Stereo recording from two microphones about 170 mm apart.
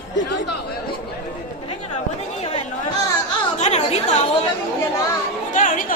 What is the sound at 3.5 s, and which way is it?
Chatter, 40° left (ahead or behind).